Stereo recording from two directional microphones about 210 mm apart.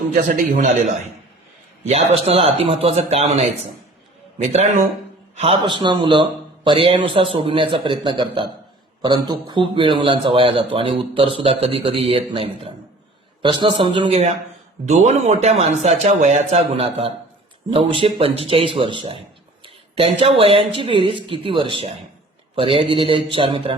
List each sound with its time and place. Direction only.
0.1 s speech: 40° right (ahead or behind)
1.8 s a man's voice: 30° right (ahead or behind)
5.4 s a man's voice: 25° right (ahead or behind)